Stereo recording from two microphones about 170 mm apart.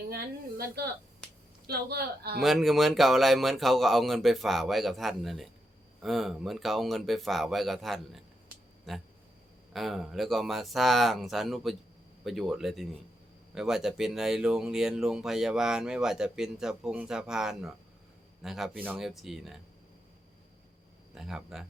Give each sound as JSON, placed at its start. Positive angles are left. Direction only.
{"t": 0.1, "sound": "a woman's voice", "side_deg": -65}
{"t": 2.4, "sound": "speech", "side_deg": 0}
{"t": 21.2, "sound": "speech", "side_deg": 0}